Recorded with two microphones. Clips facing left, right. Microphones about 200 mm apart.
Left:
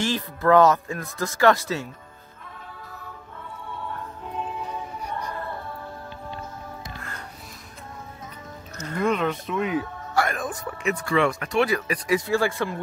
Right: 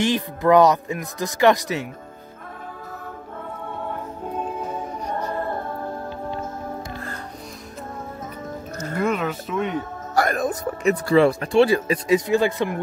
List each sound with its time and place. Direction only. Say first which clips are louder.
0.0 s speech: right 4 dB; 15° right (ahead or behind)
3.4 s music: right 4 dB; 50° right (ahead or behind)
9.0 s speech: even; 5° right (ahead or behind)
9.8 s speech: right 2 dB; 40° right (ahead or behind); by 12.7 s 20° right (ahead or behind)